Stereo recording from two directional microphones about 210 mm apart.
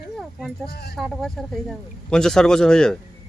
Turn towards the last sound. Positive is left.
turn(degrees=5)  # may be behind; listen again after turning